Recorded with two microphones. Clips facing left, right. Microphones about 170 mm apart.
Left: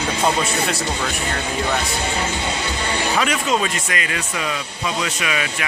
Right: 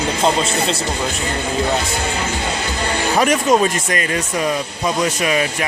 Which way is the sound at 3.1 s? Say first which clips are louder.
Right 7 dB; 45° right (ahead or behind).